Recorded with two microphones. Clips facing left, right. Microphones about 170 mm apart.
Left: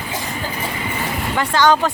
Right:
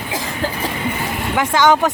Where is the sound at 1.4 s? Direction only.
5° right (ahead or behind).